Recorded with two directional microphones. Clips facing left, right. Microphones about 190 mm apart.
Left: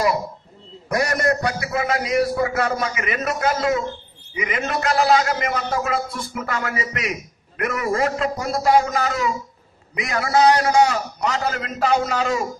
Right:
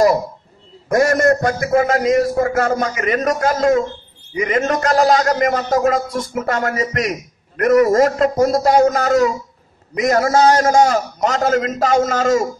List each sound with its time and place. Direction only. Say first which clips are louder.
0.8 s a man's voice: right 7 dB; 45° right (ahead or behind)